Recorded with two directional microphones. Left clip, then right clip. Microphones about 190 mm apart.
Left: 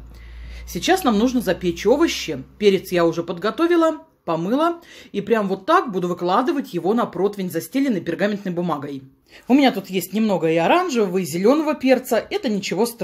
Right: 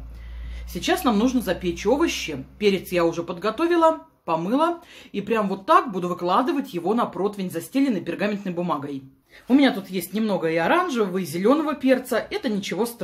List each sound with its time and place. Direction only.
0.7 s speech: 30° left (ahead or behind)